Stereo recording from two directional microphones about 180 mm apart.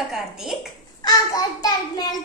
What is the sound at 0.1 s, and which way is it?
Speech, centre (ahead or behind).